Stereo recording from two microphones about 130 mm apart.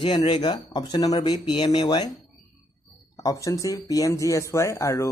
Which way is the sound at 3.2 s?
25° left (ahead or behind).